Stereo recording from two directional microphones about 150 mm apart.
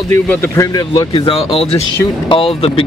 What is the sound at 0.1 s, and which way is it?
Speech, 15° left (ahead or behind).